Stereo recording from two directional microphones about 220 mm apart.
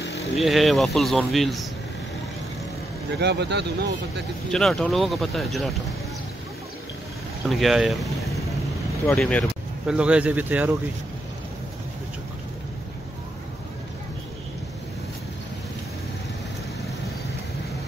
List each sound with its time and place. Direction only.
0.4 s a man's voice: centre (ahead or behind)
3.2 s speech: 50° right (ahead or behind)
4.5 s a man's voice: centre (ahead or behind)
7.4 s a man's voice: centre (ahead or behind)